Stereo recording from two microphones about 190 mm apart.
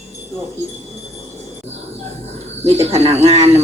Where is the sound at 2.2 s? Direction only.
35° right (ahead or behind).